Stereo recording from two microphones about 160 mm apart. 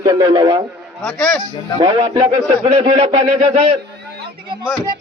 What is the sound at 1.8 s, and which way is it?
A man's voice, 35° right (ahead or behind).